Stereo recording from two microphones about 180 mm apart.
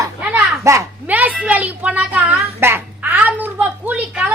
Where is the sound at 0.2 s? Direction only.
10° right (ahead or behind).